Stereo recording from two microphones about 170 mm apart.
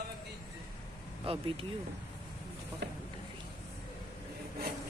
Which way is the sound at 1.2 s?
35° right (ahead or behind).